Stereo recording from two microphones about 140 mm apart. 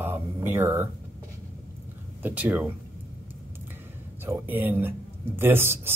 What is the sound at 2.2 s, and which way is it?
Speech, 10° right (ahead or behind).